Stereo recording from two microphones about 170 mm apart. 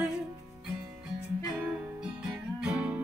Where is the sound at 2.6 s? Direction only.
5° right (ahead or behind).